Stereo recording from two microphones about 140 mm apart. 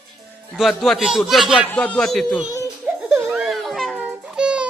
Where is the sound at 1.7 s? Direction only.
10° left (ahead or behind).